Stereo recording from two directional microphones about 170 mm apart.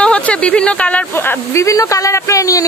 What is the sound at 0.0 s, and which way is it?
Speech, 5° left (ahead or behind).